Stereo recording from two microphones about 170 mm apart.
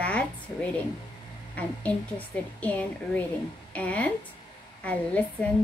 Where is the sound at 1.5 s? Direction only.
10° left (ahead or behind).